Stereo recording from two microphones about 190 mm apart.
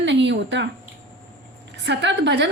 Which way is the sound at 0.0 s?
70° right (ahead or behind).